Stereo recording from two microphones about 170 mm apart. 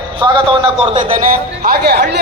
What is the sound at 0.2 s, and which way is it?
Speech, 30° right (ahead or behind).